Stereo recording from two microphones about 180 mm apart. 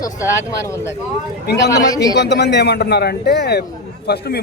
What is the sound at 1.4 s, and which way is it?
Speech, 65° left (ahead or behind).